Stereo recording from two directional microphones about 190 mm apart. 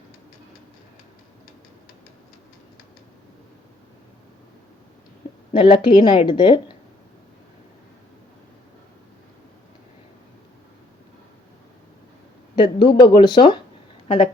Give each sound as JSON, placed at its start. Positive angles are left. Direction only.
{"t": 5.5, "sound": "speech", "side_deg": 25}
{"t": 12.5, "sound": "speech", "side_deg": 25}